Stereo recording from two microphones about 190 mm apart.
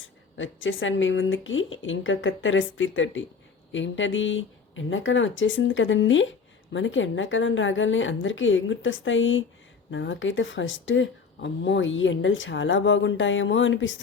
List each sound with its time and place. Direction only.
0.3 s speech: 90° left
3.7 s speech: 80° left
9.9 s speech: 75° left (ahead or behind)